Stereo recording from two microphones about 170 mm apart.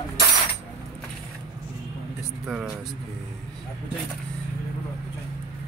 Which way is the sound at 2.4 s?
5° right (ahead or behind).